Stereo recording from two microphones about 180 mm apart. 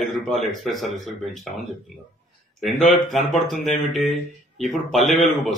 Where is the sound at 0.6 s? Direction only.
Centre (ahead or behind).